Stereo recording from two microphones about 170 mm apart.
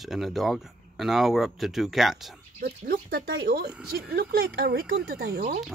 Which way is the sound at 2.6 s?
60° right (ahead or behind).